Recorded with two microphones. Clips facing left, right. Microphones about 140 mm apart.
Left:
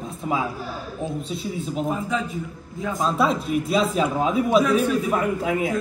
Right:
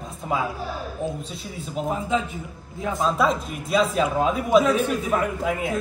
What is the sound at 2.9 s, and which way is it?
A man's voice, centre (ahead or behind).